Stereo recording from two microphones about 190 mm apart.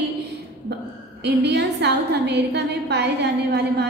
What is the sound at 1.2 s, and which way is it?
A woman's voice, 60° right (ahead or behind).